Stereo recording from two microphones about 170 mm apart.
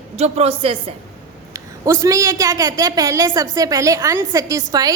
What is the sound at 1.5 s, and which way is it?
A woman's voice, 20° right (ahead or behind).